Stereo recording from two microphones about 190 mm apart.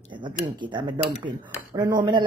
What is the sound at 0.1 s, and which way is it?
Speech, 25° right (ahead or behind).